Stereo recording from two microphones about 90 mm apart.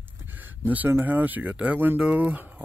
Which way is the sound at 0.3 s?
20° right (ahead or behind).